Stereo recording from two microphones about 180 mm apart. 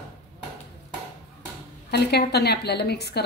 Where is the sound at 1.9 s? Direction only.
65° left (ahead or behind).